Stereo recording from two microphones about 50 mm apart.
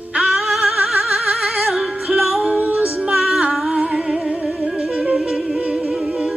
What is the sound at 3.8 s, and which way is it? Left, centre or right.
Music, centre.